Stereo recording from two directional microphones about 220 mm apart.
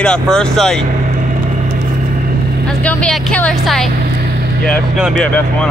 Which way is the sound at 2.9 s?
5° left (ahead or behind).